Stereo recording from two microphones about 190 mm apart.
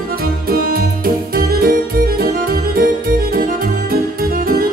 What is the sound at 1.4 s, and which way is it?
Music, 50° right (ahead or behind).